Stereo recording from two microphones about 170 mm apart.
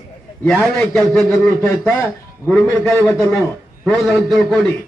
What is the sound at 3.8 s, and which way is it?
Speech, centre (ahead or behind).